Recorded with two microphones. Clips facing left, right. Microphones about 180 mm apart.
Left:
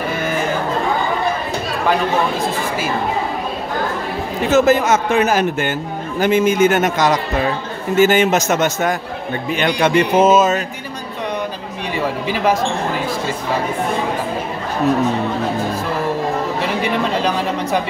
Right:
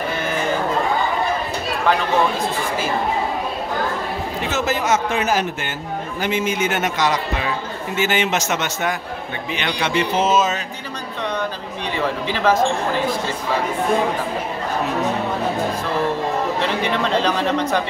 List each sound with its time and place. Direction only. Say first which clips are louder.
4.5 s speech: left 8 dB; 50° left (ahead or behind)
12.0 s speech: left 2 dB; 10° left (ahead or behind)
16.6 s speech: left 2 dB; 10° left (ahead or behind)